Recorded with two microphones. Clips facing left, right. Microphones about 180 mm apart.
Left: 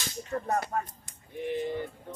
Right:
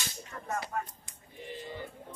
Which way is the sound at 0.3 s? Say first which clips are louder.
Left 16 dB; 40° left (ahead or behind).